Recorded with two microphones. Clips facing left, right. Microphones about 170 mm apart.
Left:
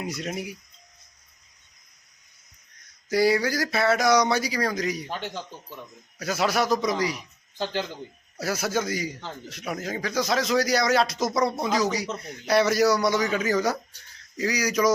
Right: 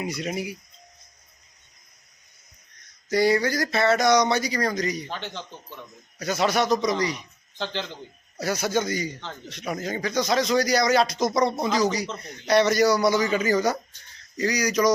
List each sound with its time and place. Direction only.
0.0 s a man's voice: centre (ahead or behind)
3.1 s a man's voice: 5° left (ahead or behind)